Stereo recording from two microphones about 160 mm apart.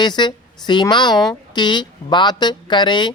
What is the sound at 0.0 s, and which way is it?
A woman's voice, 30° left (ahead or behind).